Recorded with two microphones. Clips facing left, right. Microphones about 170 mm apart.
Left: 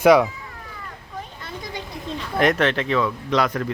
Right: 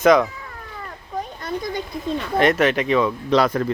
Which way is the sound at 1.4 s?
45° right (ahead or behind).